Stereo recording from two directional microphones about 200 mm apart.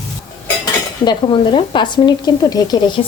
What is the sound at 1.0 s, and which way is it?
Speech, 25° left (ahead or behind).